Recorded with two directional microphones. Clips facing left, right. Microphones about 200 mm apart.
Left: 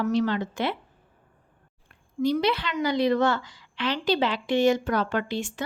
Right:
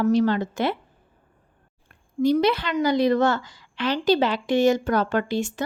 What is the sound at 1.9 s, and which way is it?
Speech, 45° right (ahead or behind).